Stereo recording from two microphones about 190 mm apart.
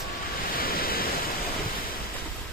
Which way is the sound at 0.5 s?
50° left (ahead or behind).